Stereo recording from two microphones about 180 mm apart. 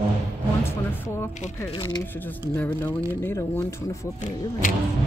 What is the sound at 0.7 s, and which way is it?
Music, 15° left (ahead or behind).